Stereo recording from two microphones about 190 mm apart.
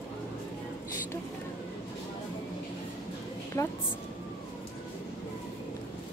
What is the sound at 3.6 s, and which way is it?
Speech, 15° left (ahead or behind).